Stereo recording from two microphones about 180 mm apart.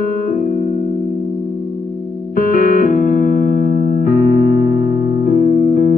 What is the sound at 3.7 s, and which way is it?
Music, 35° right (ahead or behind).